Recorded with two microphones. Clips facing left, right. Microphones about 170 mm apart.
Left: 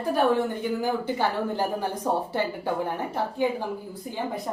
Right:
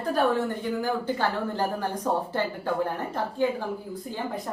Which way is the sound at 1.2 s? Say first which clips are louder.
Left 1 dB; 15° left (ahead or behind).